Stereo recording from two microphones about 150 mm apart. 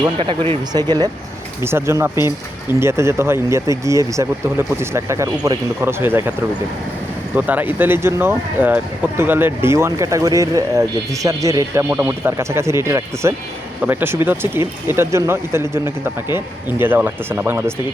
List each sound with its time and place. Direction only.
0.0 s speech: 30° right (ahead or behind)
1.6 s speech: 15° right (ahead or behind)
7.3 s speech: 10° right (ahead or behind)